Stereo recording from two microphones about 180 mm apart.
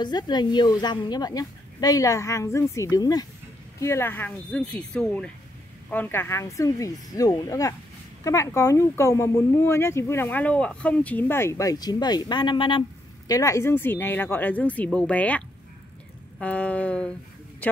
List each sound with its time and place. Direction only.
0.0 s a woman's voice: 25° left (ahead or behind); by 17.1 s 5° left (ahead or behind)